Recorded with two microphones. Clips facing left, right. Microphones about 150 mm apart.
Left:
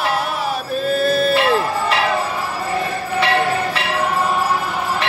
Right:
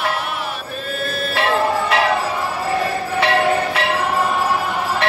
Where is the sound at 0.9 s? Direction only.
40° left (ahead or behind).